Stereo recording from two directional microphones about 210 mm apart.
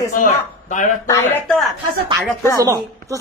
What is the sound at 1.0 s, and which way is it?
Speech, 15° left (ahead or behind).